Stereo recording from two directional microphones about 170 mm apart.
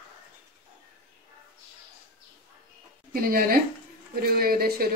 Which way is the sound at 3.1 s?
60° right (ahead or behind).